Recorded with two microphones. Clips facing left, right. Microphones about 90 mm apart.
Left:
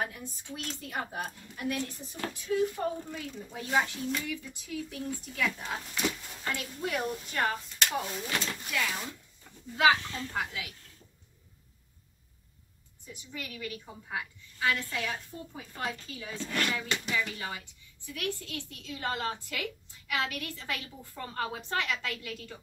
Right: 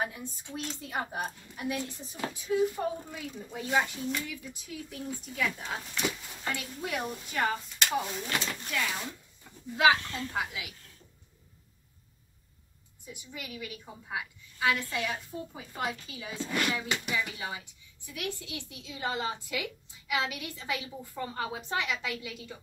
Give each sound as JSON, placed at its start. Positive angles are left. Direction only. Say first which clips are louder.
{"t": 0.0, "sound": "a sound", "louder": "right 1 dB", "side_deg": -20}
{"t": 0.7, "sound": "a woman's voice", "louder": "right 1 dB", "side_deg": -15}
{"t": 13.0, "sound": "a woman's voice", "louder": "left 1 dB", "side_deg": -10}